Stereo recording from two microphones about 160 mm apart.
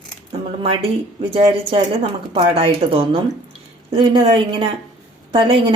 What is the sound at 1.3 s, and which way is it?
A woman's voice, 40° right (ahead or behind).